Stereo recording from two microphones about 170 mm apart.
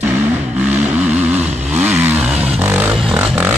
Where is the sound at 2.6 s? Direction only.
10° right (ahead or behind).